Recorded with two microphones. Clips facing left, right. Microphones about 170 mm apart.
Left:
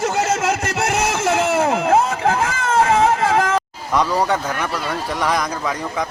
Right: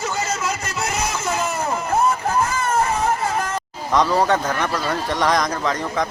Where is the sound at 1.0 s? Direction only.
80° left.